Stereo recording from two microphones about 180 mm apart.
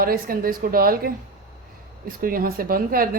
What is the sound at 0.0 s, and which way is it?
A woman's voice, 55° right (ahead or behind).